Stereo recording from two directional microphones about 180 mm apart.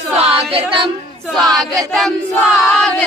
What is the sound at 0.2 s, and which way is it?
Female singing, 30° right (ahead or behind).